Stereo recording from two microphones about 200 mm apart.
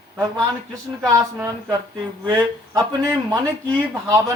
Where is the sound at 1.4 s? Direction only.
15° right (ahead or behind).